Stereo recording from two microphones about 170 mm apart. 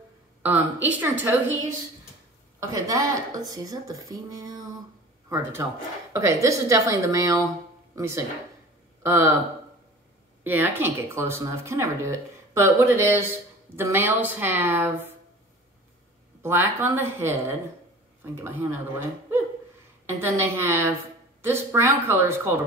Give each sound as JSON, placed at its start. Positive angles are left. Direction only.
{"t": 0.4, "sound": "speech", "side_deg": -10}
{"t": 2.7, "sound": "speech", "side_deg": -20}
{"t": 10.4, "sound": "speech", "side_deg": -10}
{"t": 16.4, "sound": "speech", "side_deg": -15}